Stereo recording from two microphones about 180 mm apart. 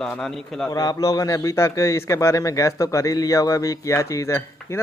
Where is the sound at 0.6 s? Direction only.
20° left (ahead or behind).